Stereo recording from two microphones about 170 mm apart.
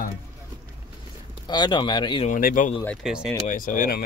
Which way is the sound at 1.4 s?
25° left (ahead or behind).